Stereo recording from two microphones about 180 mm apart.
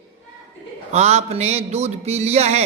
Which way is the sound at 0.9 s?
35° right (ahead or behind).